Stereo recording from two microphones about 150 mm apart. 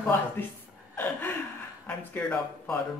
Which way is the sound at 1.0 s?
10° left (ahead or behind).